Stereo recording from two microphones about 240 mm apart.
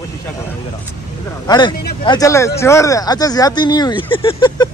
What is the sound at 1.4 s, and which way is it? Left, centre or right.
Speech, centre.